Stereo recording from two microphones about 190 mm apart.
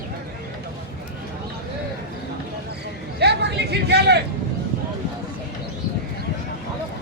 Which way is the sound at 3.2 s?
60° right (ahead or behind).